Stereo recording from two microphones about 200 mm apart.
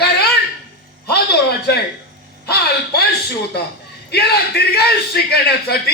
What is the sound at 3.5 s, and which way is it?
Speech, 55° left (ahead or behind).